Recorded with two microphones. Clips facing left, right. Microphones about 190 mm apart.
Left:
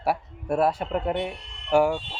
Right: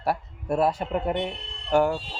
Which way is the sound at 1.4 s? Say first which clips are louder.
Right 4 dB; 30° right (ahead or behind).